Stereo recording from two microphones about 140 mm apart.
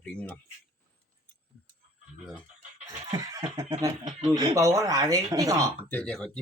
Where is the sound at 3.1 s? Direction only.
30° right (ahead or behind).